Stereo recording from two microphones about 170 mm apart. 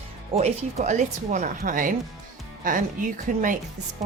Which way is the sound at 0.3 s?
40° right (ahead or behind).